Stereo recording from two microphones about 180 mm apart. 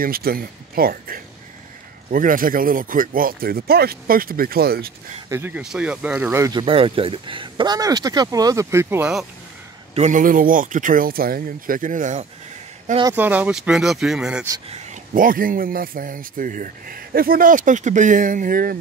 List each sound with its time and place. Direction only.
0.0 s speech: 55° right (ahead or behind)
5.3 s speech: 10° right (ahead or behind)
6.5 s speech: 30° right (ahead or behind); by 9.1 s 15° right (ahead or behind)
9.9 s speech: 45° right (ahead or behind)
13.1 s speech: 10° right (ahead or behind)
14.7 s speech: 45° right (ahead or behind)